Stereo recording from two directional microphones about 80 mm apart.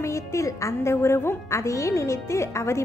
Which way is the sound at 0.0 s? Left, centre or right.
Left.